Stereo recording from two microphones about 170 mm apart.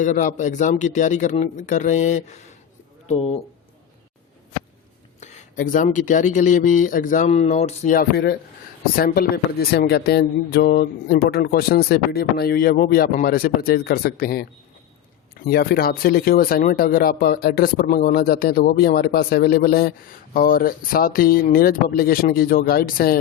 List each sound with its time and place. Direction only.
0.0 s speech: 45° left (ahead or behind)
5.2 s speech: 40° left (ahead or behind)
7.9 s speech: 70° left (ahead or behind)